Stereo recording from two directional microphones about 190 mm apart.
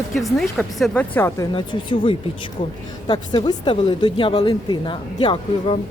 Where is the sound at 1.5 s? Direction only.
25° left (ahead or behind).